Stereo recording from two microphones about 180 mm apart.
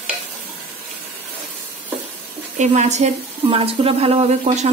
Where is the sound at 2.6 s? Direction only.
40° right (ahead or behind).